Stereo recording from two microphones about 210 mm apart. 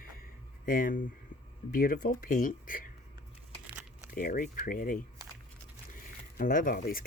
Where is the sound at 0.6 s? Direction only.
40° left (ahead or behind).